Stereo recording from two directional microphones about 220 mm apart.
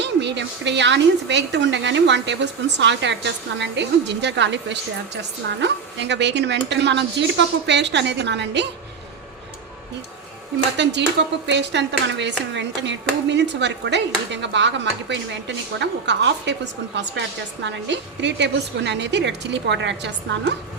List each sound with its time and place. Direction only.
0.0 s speech: 50° right (ahead or behind)
10.8 s speech: 50° right (ahead or behind)